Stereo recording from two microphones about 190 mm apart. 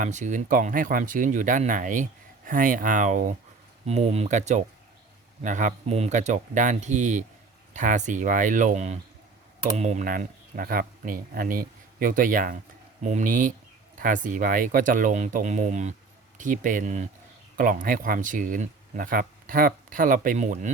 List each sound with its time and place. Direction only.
0.0 s speech: 40° right (ahead or behind)